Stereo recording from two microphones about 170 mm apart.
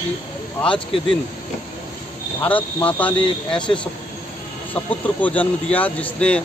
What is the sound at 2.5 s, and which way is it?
Speech, 10° left (ahead or behind).